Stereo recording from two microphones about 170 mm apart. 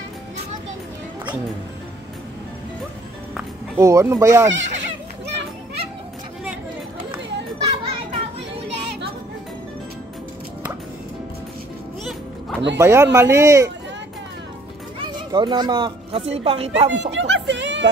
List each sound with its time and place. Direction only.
3.3 s speech: 15° right (ahead or behind)
4.5 s children playing: 90° right
7.6 s children playing: 35° right (ahead or behind)
12.0 s music: centre (ahead or behind)
12.7 s speech: 15° right (ahead or behind)
15.0 s speech: 25° right (ahead or behind)
17.1 s a sound: 90° right